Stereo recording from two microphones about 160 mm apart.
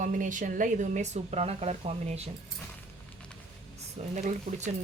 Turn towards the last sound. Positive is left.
turn(degrees=-45)  # may be behind; listen again after turning